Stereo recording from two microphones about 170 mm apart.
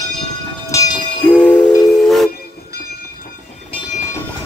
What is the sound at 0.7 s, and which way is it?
Train, 20° left (ahead or behind).